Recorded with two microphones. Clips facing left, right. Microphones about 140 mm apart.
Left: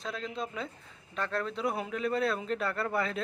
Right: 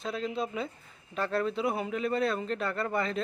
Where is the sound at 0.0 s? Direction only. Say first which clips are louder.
Right 4 dB; 5° right (ahead or behind).